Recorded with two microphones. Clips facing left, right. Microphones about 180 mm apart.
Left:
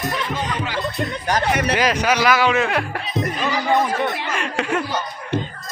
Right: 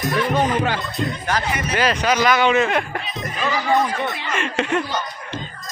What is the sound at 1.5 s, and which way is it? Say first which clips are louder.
Speech: left 5 dB; 65° left (ahead or behind).